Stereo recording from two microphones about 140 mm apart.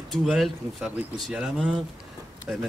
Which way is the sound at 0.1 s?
Centre (ahead or behind).